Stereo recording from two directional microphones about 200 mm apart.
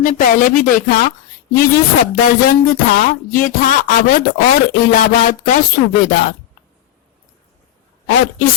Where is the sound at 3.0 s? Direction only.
45° left (ahead or behind).